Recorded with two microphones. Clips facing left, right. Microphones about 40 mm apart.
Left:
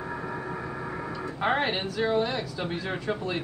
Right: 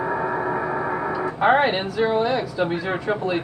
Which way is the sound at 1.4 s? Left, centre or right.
Centre.